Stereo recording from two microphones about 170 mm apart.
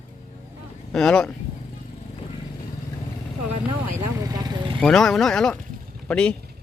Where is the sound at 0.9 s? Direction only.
5° left (ahead or behind).